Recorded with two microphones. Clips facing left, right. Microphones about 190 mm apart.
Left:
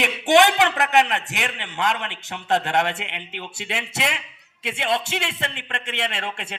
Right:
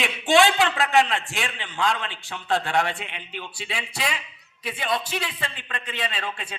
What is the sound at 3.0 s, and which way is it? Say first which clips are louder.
Speech: left 2 dB; 65° left (ahead or behind).